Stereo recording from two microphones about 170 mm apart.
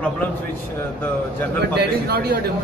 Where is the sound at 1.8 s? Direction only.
70° right (ahead or behind).